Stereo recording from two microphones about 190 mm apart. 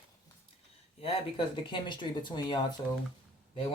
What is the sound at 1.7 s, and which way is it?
Speech, 25° left (ahead or behind).